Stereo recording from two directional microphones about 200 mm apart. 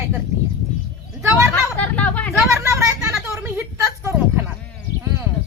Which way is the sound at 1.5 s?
10° left (ahead or behind).